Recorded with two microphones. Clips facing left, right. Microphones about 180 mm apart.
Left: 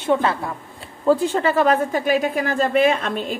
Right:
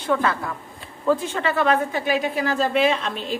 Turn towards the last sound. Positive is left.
turn(degrees=50)  # may be behind; listen again after turning